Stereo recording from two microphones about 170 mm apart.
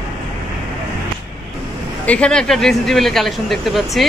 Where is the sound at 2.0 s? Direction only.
5° left (ahead or behind).